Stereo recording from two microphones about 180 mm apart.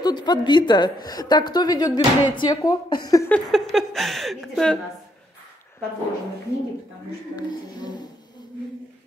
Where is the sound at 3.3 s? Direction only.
Centre (ahead or behind).